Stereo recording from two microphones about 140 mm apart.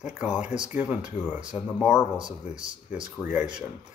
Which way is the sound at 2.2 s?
35° right (ahead or behind).